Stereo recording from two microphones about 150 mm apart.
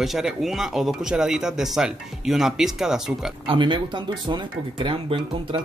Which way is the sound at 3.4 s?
35° right (ahead or behind).